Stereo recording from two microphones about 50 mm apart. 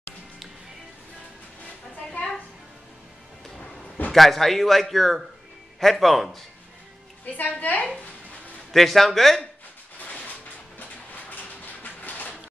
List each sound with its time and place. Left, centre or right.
4.1 s a man's voice: centre
7.3 s a woman's voice: left
8.7 s a man's voice: centre
10.8 s a sound: left